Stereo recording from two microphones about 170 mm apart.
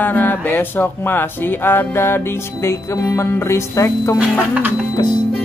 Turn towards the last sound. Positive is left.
turn(degrees=25)  # may be behind; listen again after turning